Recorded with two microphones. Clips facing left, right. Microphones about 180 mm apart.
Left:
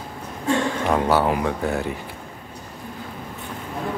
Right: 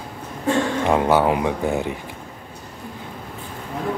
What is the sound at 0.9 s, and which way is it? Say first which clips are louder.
Speech: right 2 dB; 15° right (ahead or behind).